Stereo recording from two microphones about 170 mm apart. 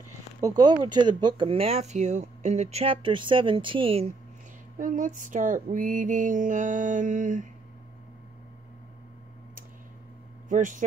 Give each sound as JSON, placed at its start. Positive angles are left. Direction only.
{"t": 0.4, "sound": "speech", "side_deg": -20}
{"t": 4.7, "sound": "mantra", "side_deg": -50}
{"t": 10.5, "sound": "mantra", "side_deg": -50}